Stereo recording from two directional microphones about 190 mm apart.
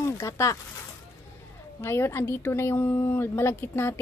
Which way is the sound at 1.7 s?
15° left (ahead or behind).